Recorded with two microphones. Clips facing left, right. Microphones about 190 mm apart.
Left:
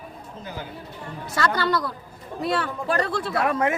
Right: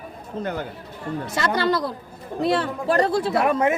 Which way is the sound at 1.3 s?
25° right (ahead or behind).